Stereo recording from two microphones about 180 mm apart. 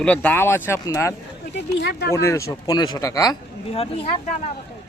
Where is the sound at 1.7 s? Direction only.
70° left (ahead or behind).